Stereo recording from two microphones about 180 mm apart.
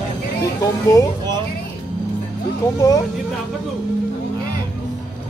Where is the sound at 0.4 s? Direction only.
20° left (ahead or behind).